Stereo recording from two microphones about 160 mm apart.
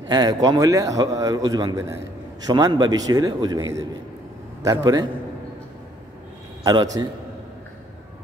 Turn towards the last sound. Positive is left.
turn(degrees=-25)  # may be behind; listen again after turning